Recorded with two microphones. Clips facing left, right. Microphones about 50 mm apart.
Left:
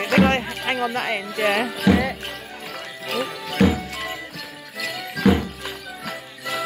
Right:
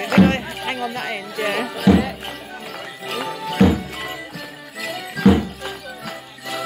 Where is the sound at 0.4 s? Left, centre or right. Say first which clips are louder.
Left 1 dB; centre.